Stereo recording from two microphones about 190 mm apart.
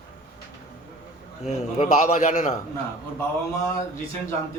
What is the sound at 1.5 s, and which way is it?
A man's voice, 35° left (ahead or behind).